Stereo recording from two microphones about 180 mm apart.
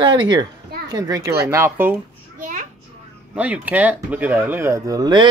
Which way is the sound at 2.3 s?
50° right (ahead or behind).